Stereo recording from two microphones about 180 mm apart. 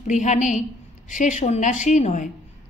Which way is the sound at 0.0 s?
45° left (ahead or behind).